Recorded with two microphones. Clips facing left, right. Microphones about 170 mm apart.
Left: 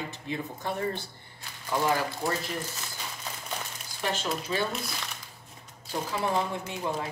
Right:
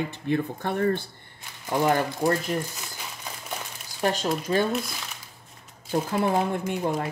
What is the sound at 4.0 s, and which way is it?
Speech, 45° right (ahead or behind).